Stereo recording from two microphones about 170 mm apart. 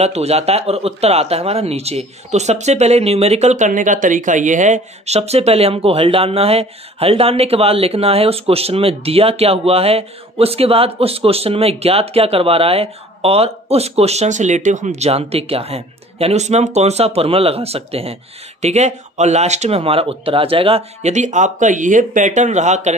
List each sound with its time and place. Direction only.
0.0 s speech: 40° right (ahead or behind)